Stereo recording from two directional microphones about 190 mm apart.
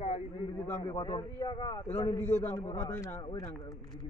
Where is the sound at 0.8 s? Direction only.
25° left (ahead or behind).